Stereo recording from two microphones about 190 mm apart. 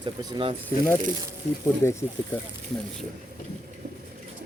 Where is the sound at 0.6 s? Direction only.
10° left (ahead or behind).